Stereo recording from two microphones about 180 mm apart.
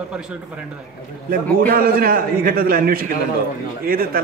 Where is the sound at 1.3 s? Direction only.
55° right (ahead or behind).